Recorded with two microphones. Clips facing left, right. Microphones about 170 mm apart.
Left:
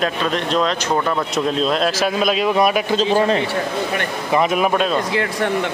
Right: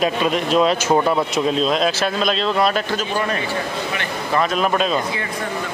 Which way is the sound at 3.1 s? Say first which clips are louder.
Left 6 dB; 25° left (ahead or behind).